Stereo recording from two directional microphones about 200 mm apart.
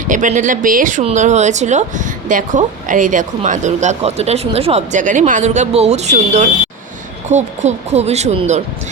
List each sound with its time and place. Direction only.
0.0 s speech: 40° right (ahead or behind)